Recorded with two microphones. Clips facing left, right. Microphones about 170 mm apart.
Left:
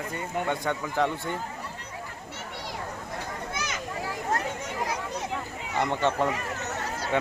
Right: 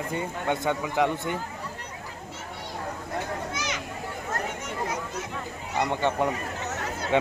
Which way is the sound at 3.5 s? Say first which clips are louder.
Right 2 dB; 55° left (ahead or behind).